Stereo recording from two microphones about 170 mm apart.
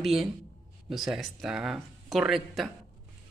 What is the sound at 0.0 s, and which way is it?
Speech, centre (ahead or behind).